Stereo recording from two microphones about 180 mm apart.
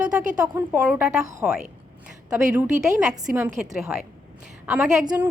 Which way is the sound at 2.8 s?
5° right (ahead or behind).